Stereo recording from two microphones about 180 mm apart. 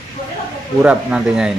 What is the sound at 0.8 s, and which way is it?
Speech, 5° right (ahead or behind).